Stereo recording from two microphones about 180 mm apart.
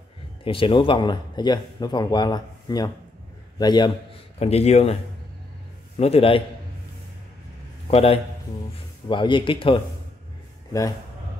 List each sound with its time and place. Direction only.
0.4 s a man's voice: 30° left (ahead or behind)
4.4 s a man's voice: 35° left (ahead or behind)
5.9 s a man's voice: 35° left (ahead or behind)
7.9 s a man's voice: 35° left (ahead or behind)